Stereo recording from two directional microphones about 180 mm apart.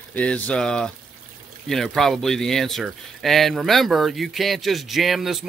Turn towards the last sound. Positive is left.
turn(degrees=0)  # may be behind; listen again after turning